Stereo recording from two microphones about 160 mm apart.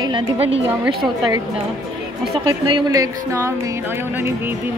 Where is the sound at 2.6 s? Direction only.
25° right (ahead or behind).